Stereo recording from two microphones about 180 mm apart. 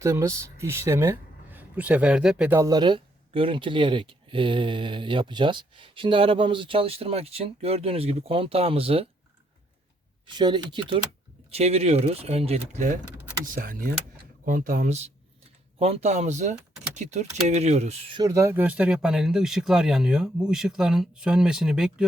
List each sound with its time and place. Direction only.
0.0 s speech: 15° right (ahead or behind); by 9.0 s 30° right (ahead or behind)
10.2 s speech: 25° right (ahead or behind)
18.2 s speech: 15° right (ahead or behind)